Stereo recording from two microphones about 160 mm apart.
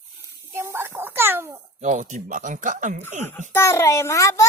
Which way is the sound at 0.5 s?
15° right (ahead or behind).